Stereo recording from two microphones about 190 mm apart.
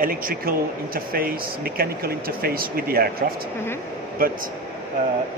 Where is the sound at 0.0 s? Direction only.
50° right (ahead or behind).